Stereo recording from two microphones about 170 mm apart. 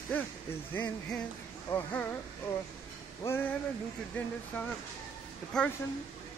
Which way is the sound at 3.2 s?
15° left (ahead or behind).